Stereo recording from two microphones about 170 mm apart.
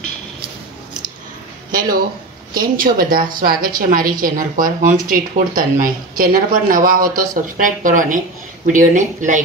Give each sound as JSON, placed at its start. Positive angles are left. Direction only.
{"t": 1.7, "sound": "a woman's voice", "side_deg": -55}